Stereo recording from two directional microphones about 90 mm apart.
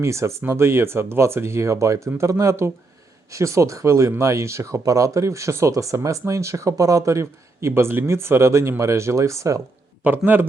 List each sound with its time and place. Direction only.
0.0 s speech: 30° right (ahead or behind)
10.0 s speech: 20° right (ahead or behind)